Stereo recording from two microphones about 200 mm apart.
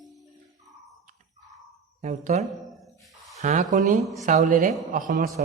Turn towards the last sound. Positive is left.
turn(degrees=-40)  # may be behind; listen again after turning